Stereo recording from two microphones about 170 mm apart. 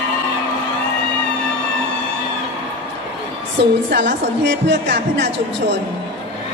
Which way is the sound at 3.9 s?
80° right.